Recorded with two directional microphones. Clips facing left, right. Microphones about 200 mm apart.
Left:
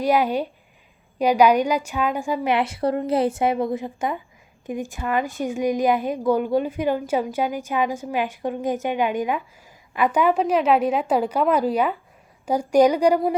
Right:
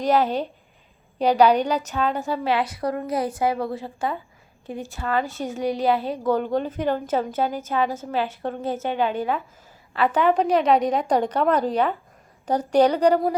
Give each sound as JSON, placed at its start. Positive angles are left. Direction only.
{"t": 0.0, "sound": "a woman's voice", "side_deg": 10}